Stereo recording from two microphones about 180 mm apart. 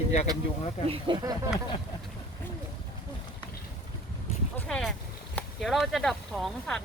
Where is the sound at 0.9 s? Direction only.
25° right (ahead or behind).